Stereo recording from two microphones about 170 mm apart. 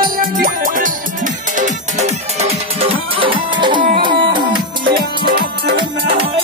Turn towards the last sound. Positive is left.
turn(degrees=-65)  # may be behind; listen again after turning